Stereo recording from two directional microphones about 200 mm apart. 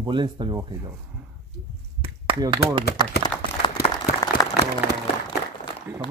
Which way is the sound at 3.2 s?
20° left (ahead or behind).